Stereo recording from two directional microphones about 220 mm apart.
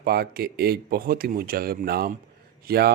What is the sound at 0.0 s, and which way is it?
Speech, 45° right (ahead or behind).